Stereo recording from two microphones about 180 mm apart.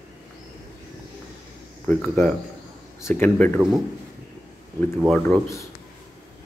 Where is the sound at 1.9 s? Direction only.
10° left (ahead or behind).